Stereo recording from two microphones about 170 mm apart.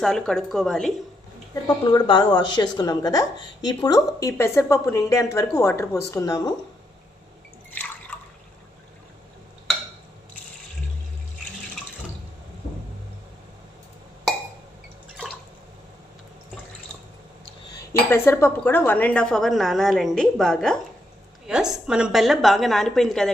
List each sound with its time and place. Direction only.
0.0 s speech: centre (ahead or behind)
1.6 s speech: 30° left (ahead or behind)
18.1 s speech: 15° left (ahead or behind)